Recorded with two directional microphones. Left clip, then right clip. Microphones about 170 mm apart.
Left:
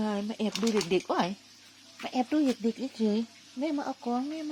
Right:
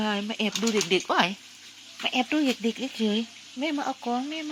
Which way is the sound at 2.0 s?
5° right (ahead or behind).